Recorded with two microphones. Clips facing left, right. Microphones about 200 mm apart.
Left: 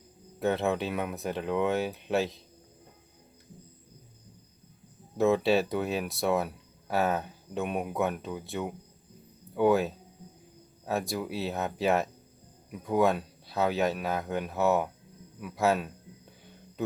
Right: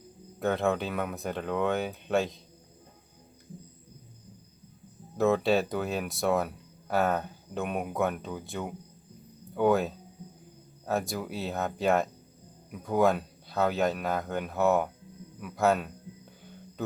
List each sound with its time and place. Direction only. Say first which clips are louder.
0.3 s speech: even; centre (ahead or behind)
5.1 s speech: even; centre (ahead or behind)